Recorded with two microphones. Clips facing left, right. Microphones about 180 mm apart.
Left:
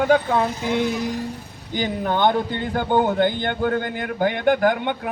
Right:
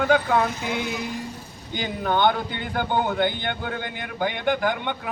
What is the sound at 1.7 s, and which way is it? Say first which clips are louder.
A man's voice: left 2 dB; 35° left (ahead or behind).